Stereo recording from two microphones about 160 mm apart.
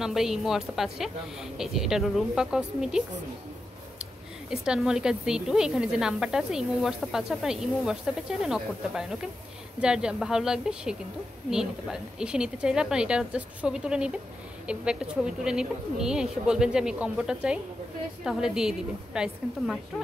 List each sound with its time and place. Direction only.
0.0 s speech: 5° right (ahead or behind)
4.5 s speech: 5° right (ahead or behind)